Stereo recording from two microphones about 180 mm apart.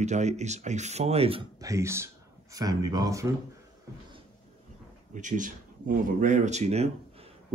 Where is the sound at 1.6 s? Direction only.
15° right (ahead or behind).